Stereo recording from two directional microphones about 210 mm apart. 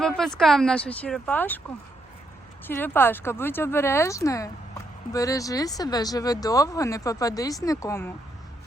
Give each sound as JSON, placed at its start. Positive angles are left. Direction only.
{"t": 0.0, "sound": "speech", "side_deg": 0}
{"t": 2.6, "sound": "speech", "side_deg": 10}